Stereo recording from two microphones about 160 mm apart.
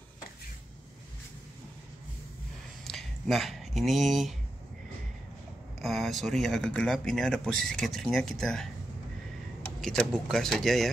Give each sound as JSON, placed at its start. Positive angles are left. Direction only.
{"t": 2.8, "sound": "a sound", "side_deg": 0}
{"t": 5.8, "sound": "speech", "side_deg": 0}
{"t": 9.8, "sound": "speech", "side_deg": 5}